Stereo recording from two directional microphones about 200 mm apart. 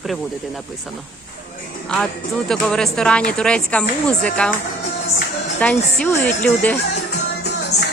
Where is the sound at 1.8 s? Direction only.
5° left (ahead or behind).